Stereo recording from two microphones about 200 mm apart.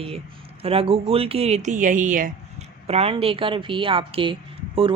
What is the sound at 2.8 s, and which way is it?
A woman's voice, 30° right (ahead or behind).